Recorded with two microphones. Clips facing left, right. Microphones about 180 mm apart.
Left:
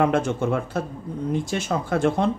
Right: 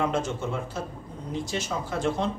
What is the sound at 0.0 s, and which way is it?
Speech, 60° left (ahead or behind).